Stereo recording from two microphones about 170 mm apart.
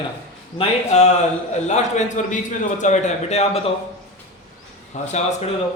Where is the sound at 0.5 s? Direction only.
40° left (ahead or behind).